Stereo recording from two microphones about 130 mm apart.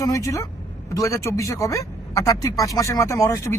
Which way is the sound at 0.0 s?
25° left (ahead or behind).